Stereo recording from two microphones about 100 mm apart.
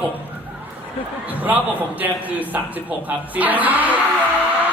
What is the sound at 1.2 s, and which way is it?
A man's voice, 15° right (ahead or behind).